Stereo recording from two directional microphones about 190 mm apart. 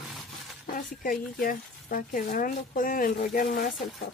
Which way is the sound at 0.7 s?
45° left (ahead or behind).